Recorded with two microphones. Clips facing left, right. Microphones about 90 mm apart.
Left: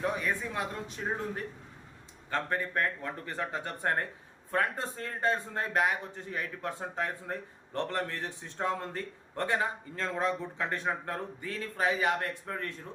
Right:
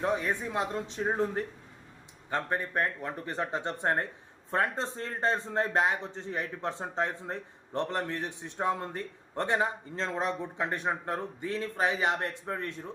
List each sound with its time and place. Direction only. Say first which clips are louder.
0.0 s a man's voice: right 2 dB; 25° right (ahead or behind)